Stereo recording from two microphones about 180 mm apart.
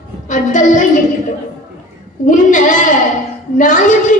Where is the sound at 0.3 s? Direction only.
45° left (ahead or behind).